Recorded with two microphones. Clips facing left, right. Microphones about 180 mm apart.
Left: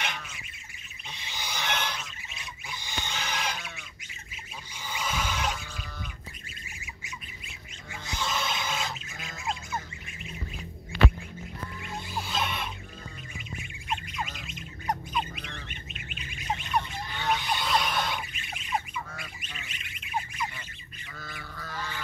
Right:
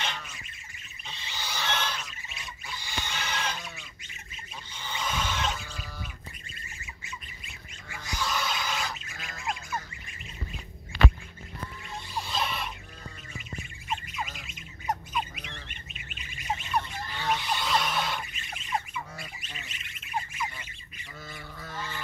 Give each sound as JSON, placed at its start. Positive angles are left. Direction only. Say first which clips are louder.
{"t": 1.0, "sound": "a sound", "louder": "even", "side_deg": 15}
{"t": 2.7, "sound": "goose", "louder": "even", "side_deg": 20}
{"t": 4.7, "sound": "a sound", "louder": "even", "side_deg": 10}
{"t": 7.9, "sound": "squawk", "louder": "even", "side_deg": 20}
{"t": 11.8, "sound": "music", "louder": "left 1 dB", "side_deg": 0}
{"t": 13.8, "sound": "squawk", "louder": "left 1 dB", "side_deg": -5}
{"t": 19.4, "sound": "bird", "louder": "left 1 dB", "side_deg": 0}
{"t": 21.4, "sound": "goose", "louder": "left 1 dB", "side_deg": -25}
{"t": 21.7, "sound": "goose", "louder": "even", "side_deg": 0}